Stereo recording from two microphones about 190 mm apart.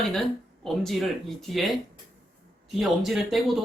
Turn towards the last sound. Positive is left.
turn(degrees=0)  # may be behind; listen again after turning